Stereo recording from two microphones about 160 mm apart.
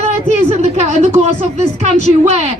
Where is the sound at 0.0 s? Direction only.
40° right (ahead or behind).